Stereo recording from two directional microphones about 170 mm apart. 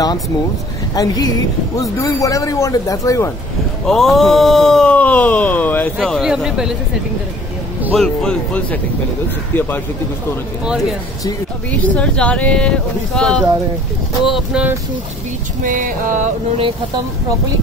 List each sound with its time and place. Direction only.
0.9 s speech: 20° left (ahead or behind)
3.8 s groan: centre (ahead or behind)
7.9 s groan: 5° left (ahead or behind)
9.5 s speech: 10° left (ahead or behind)
10.6 s groan: 5° right (ahead or behind)
11.8 s speech: 5° left (ahead or behind)
14.2 s groan: 5° right (ahead or behind)
15.6 s music: 50° right (ahead or behind)